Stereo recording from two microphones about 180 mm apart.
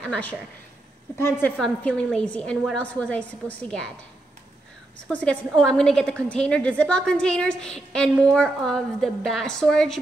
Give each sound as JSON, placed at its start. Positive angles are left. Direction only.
{"t": 0.0, "sound": "a woman's voice", "side_deg": 5}
{"t": 1.4, "sound": "a woman's voice", "side_deg": 5}
{"t": 5.0, "sound": "a woman's voice", "side_deg": 5}